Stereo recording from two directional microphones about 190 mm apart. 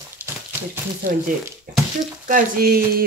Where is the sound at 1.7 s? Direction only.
45° right (ahead or behind).